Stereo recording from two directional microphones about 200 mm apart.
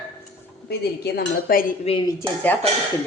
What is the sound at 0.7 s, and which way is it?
Speech, 55° left (ahead or behind).